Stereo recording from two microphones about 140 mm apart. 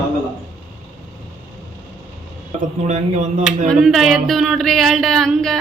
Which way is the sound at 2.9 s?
55° right (ahead or behind).